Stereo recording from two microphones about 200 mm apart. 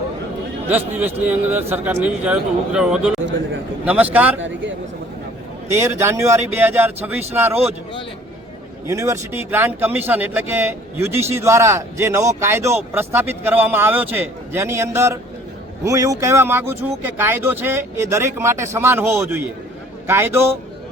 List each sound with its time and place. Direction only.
0.7 s speech: 10° right (ahead or behind)
3.2 s a man's voice: 65° right (ahead or behind)
3.8 s speech: 5° right (ahead or behind)
5.7 s speech: 15° right (ahead or behind)
8.9 s speech: 15° right (ahead or behind)